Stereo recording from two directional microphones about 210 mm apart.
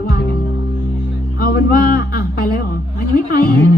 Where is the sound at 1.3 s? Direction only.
45° left (ahead or behind).